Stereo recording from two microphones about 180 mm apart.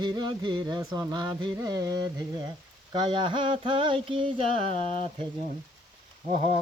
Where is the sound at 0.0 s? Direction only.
25° right (ahead or behind).